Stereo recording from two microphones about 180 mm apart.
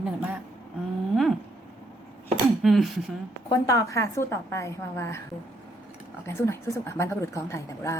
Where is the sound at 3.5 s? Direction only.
20° left (ahead or behind).